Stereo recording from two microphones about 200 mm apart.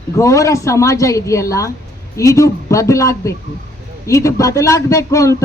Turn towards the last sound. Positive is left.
turn(degrees=15)  # may be behind; listen again after turning